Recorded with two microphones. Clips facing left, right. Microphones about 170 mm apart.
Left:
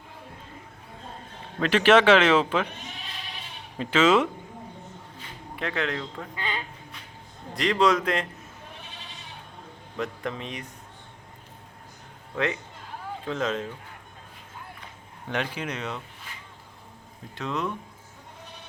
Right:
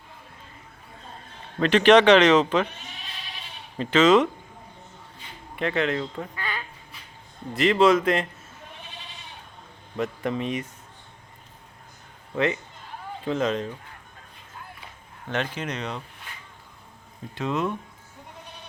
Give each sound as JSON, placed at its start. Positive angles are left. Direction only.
{"t": 1.5, "sound": "a man's voice", "side_deg": 5}
{"t": 3.8, "sound": "speech", "side_deg": 10}
{"t": 5.5, "sound": "a man's voice", "side_deg": 0}
{"t": 6.3, "sound": "a sound", "side_deg": 20}
{"t": 7.5, "sound": "a man's voice", "side_deg": 0}
{"t": 10.0, "sound": "a man's voice", "side_deg": -5}
{"t": 13.2, "sound": "a man's voice", "side_deg": 0}
{"t": 15.3, "sound": "speech", "side_deg": 10}
{"t": 17.3, "sound": "a man's voice", "side_deg": 0}